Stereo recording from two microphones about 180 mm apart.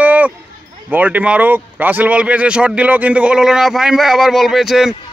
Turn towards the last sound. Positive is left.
turn(degrees=0)  # may be behind; listen again after turning